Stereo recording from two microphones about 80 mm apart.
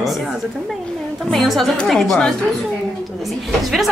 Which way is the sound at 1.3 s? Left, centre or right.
Centre.